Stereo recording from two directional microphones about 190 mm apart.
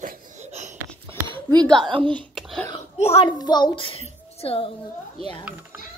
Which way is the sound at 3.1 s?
25° left (ahead or behind).